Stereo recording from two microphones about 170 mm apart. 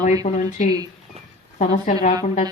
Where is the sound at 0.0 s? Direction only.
50° left (ahead or behind).